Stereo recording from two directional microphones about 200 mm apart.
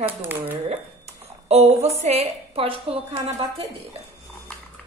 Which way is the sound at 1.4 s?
30° right (ahead or behind).